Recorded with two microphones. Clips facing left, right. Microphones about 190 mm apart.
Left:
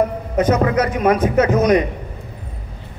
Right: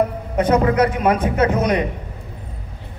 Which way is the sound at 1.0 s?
30° right (ahead or behind).